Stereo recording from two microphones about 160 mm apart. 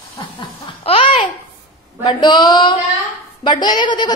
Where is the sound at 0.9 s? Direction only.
35° left (ahead or behind).